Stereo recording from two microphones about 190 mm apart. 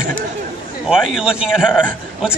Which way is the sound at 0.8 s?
5° right (ahead or behind).